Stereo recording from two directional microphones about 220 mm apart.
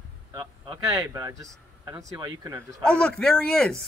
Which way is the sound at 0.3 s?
15° right (ahead or behind).